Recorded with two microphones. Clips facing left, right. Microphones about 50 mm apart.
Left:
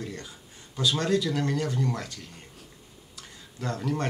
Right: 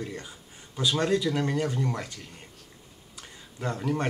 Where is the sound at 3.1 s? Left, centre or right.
Centre.